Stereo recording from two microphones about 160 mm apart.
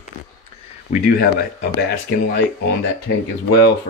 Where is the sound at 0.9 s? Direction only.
70° left (ahead or behind).